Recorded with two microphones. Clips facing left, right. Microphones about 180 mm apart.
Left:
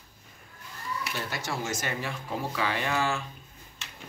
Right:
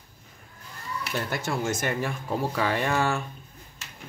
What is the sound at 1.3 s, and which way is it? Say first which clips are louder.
Speech: right 6 dB; 55° right (ahead or behind).